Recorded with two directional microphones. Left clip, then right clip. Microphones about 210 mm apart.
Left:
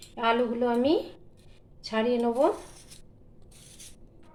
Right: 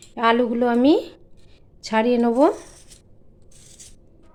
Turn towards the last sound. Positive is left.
turn(degrees=-55)  # may be behind; listen again after turning